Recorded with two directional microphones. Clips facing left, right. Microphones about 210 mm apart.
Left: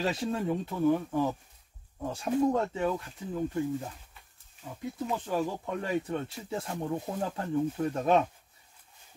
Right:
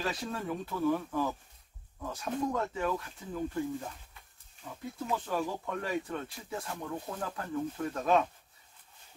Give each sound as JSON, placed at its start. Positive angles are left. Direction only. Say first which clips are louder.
{"t": 0.0, "sound": "speech", "louder": "left 5 dB", "side_deg": 25}
{"t": 5.1, "sound": "speech", "louder": "left 1 dB", "side_deg": 20}